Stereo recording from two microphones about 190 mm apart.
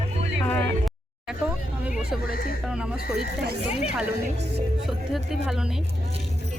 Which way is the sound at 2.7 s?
5° right (ahead or behind).